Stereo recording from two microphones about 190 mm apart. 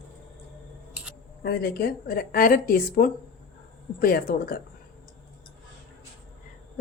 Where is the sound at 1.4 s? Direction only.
55° left (ahead or behind).